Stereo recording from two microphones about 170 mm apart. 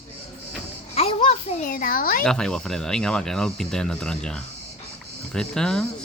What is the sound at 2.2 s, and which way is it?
Speech, 5° left (ahead or behind).